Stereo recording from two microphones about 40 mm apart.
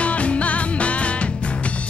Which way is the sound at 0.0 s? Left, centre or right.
Left.